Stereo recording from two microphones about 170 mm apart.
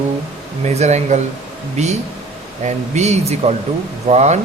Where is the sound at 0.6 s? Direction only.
40° right (ahead or behind).